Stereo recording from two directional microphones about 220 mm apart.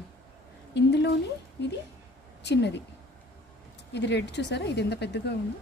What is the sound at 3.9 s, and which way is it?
Speech, 50° left (ahead or behind).